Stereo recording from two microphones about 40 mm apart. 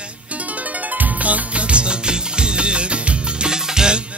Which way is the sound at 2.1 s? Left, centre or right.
Right.